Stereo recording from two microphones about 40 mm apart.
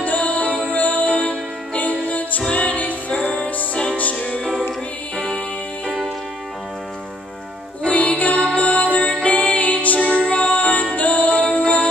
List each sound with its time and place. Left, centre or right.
0.0 s music: left
0.5 s music: right
0.7 s music: left
3.1 s music: left
4.4 s music: centre
5.1 s music: centre
5.9 s music: centre
7.8 s music: left